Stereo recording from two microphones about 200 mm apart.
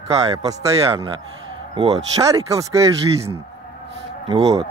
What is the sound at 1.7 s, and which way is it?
Speech, 30° right (ahead or behind).